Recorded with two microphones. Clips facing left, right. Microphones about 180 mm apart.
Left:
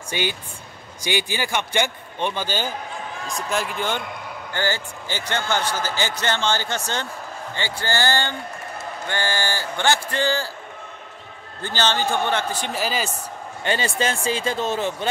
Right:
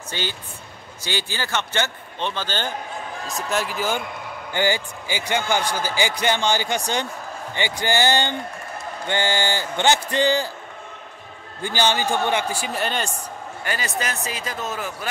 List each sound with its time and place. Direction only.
0.1 s a man's voice: 15° left (ahead or behind)
3.3 s speech: centre (ahead or behind)
4.5 s a man's voice: 15° right (ahead or behind)
11.6 s a man's voice: 15° right (ahead or behind)
12.7 s speech: 5° left (ahead or behind)
13.7 s a man's voice: 30° left (ahead or behind)